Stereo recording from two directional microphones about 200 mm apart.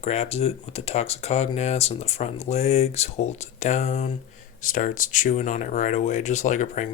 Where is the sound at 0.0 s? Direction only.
30° left (ahead or behind).